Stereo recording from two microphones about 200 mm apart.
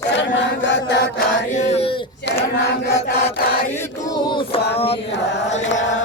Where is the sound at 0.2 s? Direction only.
65° left (ahead or behind).